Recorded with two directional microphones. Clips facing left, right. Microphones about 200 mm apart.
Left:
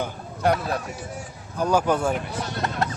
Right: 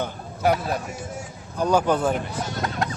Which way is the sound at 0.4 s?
5° right (ahead or behind).